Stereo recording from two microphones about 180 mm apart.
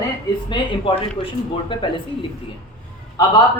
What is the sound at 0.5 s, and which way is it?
Speech, 30° left (ahead or behind).